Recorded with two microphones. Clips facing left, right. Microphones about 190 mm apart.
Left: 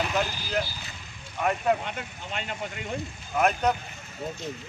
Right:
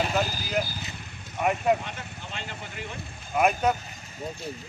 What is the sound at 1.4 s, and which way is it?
Speech, 10° right (ahead or behind).